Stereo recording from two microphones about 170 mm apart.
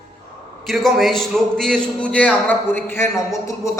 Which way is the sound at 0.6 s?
Centre (ahead or behind).